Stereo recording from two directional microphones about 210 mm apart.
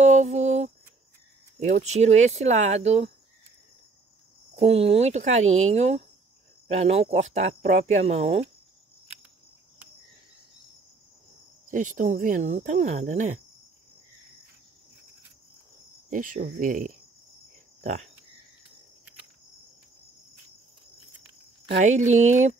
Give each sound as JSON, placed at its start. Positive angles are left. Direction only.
{"t": 0.0, "sound": "a sound", "side_deg": -35}
{"t": 1.6, "sound": "speech", "side_deg": -35}
{"t": 4.6, "sound": "speech", "side_deg": -30}
{"t": 11.7, "sound": "speech", "side_deg": -40}
{"t": 16.1, "sound": "speech", "side_deg": -40}
{"t": 21.7, "sound": "speech", "side_deg": -35}